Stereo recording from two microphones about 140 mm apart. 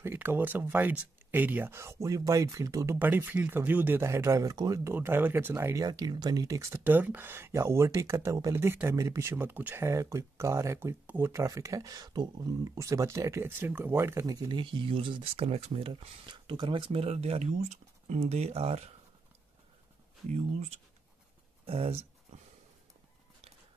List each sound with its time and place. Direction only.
0.0 s speech: 15° right (ahead or behind)
3.0 s speech: 15° right (ahead or behind)
4.9 s speech: 15° right (ahead or behind)
14.2 s speech: 30° right (ahead or behind); by 18.9 s 45° right (ahead or behind)
20.2 s speech: 50° right (ahead or behind)
22.3 s a sound: 50° right (ahead or behind)